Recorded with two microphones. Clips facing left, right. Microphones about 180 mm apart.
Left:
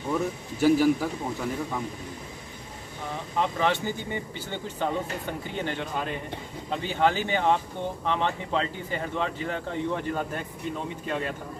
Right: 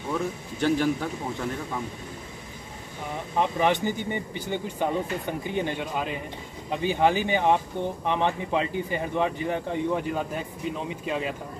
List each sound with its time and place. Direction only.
0.1 s speech: 5° left (ahead or behind)
3.3 s speech: 15° right (ahead or behind)